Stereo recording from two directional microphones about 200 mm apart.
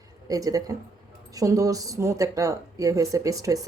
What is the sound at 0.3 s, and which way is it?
A woman's voice, 15° right (ahead or behind).